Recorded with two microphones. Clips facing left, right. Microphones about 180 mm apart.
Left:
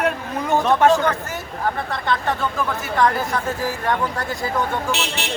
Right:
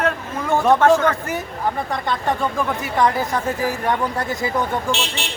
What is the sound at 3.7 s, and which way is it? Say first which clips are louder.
Speech: right 1 dB; 20° right (ahead or behind).